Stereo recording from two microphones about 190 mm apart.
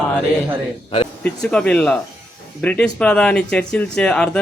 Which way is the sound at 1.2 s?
5° left (ahead or behind).